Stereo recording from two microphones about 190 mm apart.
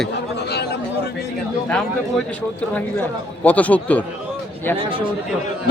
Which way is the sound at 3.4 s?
10° left (ahead or behind).